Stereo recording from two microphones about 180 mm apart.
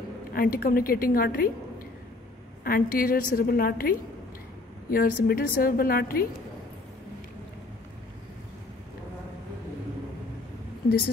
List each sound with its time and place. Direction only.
0.3 s a woman's voice: 55° left (ahead or behind)
2.6 s a woman's voice: 55° left (ahead or behind)
4.9 s a woman's voice: 50° left (ahead or behind)